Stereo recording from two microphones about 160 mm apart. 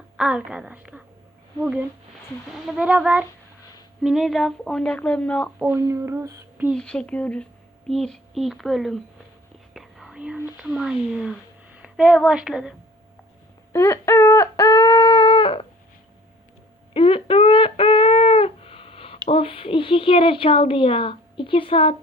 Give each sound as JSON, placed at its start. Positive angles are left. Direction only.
{"t": 0.2, "sound": "speech", "side_deg": -5}
{"t": 2.6, "sound": "a woman's voice", "side_deg": -5}
{"t": 5.5, "sound": "speech", "side_deg": -15}
{"t": 6.7, "sound": "a woman's voice", "side_deg": 5}
{"t": 13.7, "sound": "a sound", "side_deg": 15}
{"t": 16.9, "sound": "a sound", "side_deg": 35}